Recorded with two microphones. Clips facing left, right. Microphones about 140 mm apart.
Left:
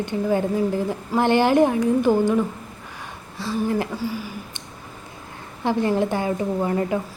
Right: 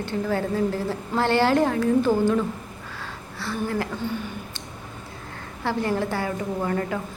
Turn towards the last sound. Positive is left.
turn(degrees=20)  # may be behind; listen again after turning